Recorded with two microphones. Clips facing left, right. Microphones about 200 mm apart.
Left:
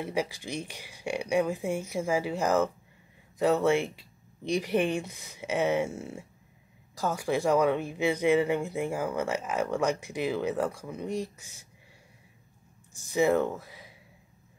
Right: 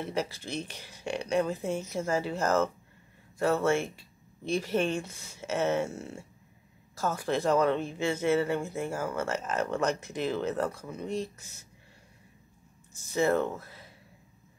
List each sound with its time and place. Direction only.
0.0 s speech: 10° left (ahead or behind)
13.0 s speech: 15° left (ahead or behind)